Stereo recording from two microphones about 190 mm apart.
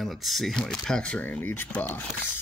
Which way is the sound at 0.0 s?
Centre (ahead or behind).